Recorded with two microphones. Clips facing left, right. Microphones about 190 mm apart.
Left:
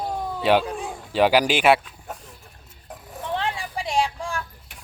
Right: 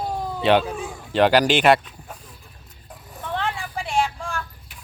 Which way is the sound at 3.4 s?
15° left (ahead or behind).